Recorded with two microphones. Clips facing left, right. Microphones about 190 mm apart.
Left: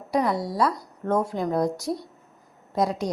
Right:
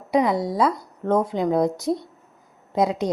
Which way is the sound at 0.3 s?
20° right (ahead or behind).